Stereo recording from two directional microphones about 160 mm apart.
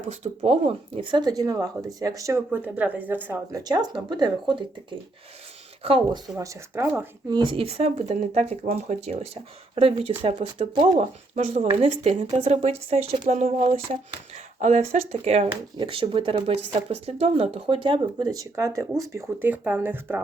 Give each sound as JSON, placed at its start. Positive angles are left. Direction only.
{"t": 0.1, "sound": "speech", "side_deg": -40}
{"t": 3.6, "sound": "speech", "side_deg": -25}
{"t": 6.4, "sound": "speech", "side_deg": -20}
{"t": 7.3, "sound": "speech", "side_deg": -30}